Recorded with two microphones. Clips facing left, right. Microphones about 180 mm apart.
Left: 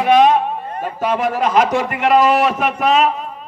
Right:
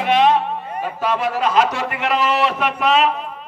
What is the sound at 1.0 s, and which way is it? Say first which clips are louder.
A man's voice: left 3 dB; 50° left (ahead or behind).